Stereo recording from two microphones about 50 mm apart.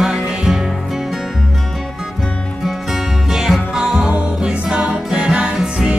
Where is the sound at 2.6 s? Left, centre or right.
Centre.